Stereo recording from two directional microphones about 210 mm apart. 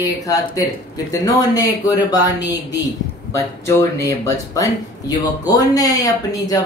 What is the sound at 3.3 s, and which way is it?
Speech, 15° left (ahead or behind).